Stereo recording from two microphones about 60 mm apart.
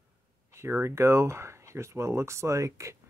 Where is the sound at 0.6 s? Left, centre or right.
Right.